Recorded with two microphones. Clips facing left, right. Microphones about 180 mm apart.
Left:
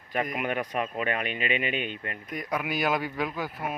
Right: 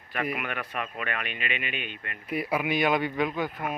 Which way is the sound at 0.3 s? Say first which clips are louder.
Left 4 dB; 40° left (ahead or behind).